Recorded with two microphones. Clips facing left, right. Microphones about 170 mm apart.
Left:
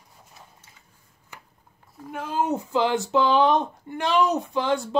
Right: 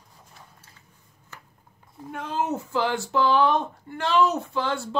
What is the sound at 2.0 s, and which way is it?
Speech, 5° left (ahead or behind).